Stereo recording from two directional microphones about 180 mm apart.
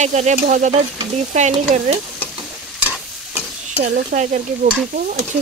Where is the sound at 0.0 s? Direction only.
40° right (ahead or behind).